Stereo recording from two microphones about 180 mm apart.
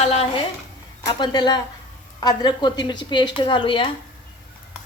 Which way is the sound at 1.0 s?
25° left (ahead or behind).